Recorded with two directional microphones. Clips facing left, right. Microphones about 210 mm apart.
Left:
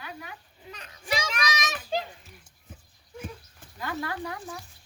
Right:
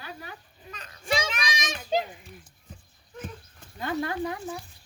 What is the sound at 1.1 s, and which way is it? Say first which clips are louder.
Children playing: right 1 dB; 30° right (ahead or behind).